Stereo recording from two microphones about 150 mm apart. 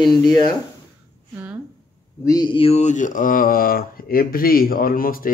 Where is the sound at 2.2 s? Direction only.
25° left (ahead or behind).